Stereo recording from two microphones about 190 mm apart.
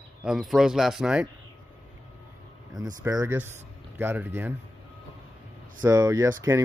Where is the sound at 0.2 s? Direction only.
Centre (ahead or behind).